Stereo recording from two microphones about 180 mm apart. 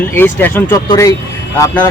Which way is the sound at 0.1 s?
10° left (ahead or behind).